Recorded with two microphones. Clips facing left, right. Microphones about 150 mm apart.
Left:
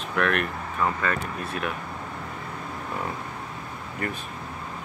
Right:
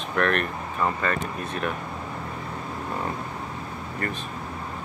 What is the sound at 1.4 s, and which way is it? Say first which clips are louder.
Speech: right 1 dB; 5° left (ahead or behind).